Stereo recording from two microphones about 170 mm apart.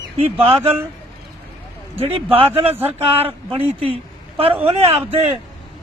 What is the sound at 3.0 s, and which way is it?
Speech, 35° right (ahead or behind).